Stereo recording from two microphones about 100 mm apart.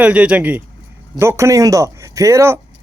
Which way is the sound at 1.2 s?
25° right (ahead or behind).